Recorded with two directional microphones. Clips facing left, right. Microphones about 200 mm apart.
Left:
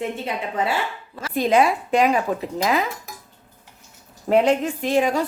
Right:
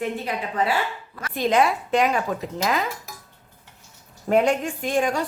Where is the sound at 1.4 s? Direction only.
10° left (ahead or behind).